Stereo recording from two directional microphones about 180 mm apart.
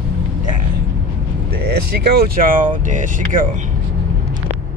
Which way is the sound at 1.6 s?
60° right (ahead or behind).